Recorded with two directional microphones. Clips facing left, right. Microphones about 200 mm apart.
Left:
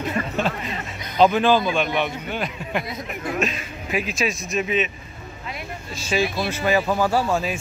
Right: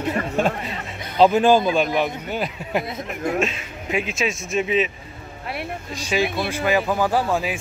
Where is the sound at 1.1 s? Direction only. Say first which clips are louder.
Right 2 dB; 30° right (ahead or behind).